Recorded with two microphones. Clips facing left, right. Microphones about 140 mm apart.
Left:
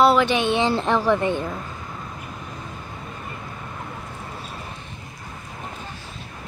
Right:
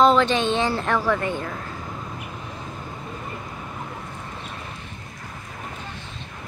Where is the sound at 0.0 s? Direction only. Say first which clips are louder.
Even; 10° left (ahead or behind).